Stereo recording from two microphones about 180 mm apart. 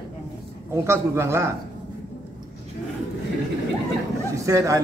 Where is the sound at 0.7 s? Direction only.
15° right (ahead or behind).